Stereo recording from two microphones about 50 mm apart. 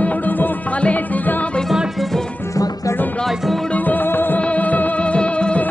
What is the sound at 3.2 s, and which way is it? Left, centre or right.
Music, centre.